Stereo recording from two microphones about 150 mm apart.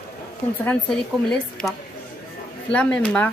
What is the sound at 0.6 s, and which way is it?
A woman's voice, 5° left (ahead or behind).